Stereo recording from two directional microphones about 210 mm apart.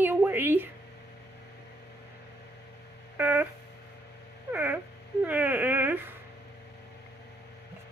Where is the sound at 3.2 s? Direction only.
10° right (ahead or behind).